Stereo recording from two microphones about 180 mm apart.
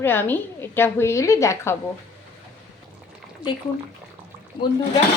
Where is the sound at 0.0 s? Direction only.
10° left (ahead or behind).